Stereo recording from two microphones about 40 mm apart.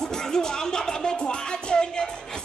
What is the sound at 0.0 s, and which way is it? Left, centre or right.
Music, centre.